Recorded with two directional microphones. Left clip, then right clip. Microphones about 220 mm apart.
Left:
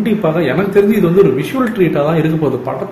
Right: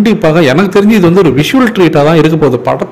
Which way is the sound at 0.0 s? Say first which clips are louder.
Right 7 dB; 50° right (ahead or behind).